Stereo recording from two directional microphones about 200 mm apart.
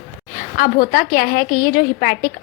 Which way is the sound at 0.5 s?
45° left (ahead or behind).